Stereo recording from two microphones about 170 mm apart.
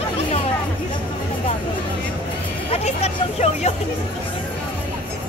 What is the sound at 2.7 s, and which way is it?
Hubbub, 40° left (ahead or behind).